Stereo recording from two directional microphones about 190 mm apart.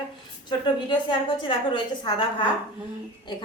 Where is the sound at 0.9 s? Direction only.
25° left (ahead or behind).